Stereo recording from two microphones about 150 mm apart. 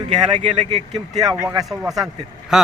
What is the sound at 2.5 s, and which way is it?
Speech, 5° right (ahead or behind).